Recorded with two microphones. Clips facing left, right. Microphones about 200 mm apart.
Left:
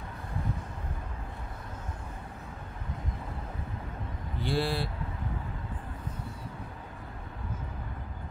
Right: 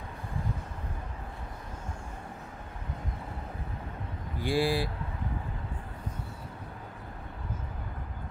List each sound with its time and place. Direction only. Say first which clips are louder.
4.4 s speech: right 3 dB; 15° right (ahead or behind)